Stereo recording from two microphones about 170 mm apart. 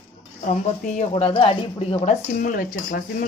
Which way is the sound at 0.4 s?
45° left (ahead or behind).